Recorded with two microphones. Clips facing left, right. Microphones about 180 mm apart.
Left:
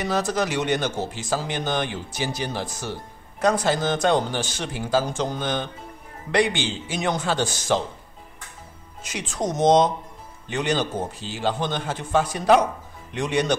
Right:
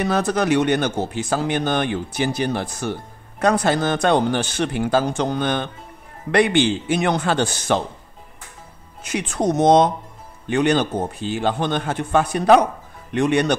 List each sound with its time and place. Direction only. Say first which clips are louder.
0.0 s speech: right 4 dB; 60° right (ahead or behind)
9.0 s speech: right 6 dB; 60° right (ahead or behind)